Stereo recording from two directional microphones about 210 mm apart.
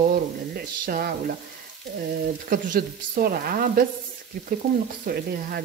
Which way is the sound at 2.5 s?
40° right (ahead or behind).